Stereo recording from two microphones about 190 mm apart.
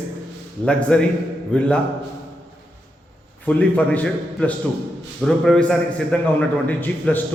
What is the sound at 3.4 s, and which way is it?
A man's voice, 5° left (ahead or behind).